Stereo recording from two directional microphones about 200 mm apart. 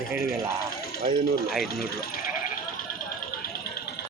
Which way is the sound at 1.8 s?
50° left (ahead or behind).